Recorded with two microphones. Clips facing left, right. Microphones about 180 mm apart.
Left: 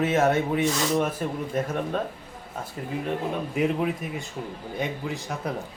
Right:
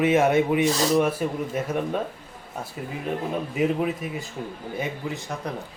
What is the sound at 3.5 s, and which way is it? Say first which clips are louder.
Speech: right 1 dB; centre (ahead or behind).